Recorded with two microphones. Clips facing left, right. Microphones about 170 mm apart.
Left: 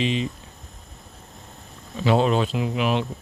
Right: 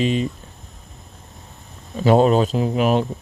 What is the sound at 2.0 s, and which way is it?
Speech, 45° right (ahead or behind).